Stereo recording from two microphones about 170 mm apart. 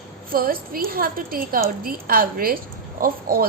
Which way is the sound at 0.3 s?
60° right (ahead or behind).